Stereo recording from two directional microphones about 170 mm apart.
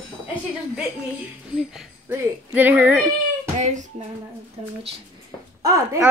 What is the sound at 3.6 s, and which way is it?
Speech, 45° right (ahead or behind).